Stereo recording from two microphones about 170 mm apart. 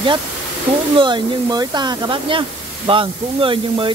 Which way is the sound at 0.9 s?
30° right (ahead or behind).